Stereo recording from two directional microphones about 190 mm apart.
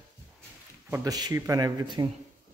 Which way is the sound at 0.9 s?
20° right (ahead or behind).